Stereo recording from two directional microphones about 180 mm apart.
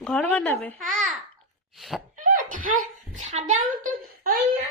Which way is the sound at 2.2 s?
50° right (ahead or behind).